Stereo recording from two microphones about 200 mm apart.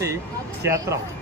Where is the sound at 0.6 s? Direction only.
15° right (ahead or behind).